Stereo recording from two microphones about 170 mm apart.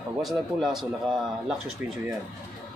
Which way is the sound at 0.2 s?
Centre (ahead or behind).